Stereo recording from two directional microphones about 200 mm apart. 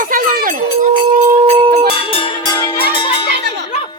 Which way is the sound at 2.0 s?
25° left (ahead or behind).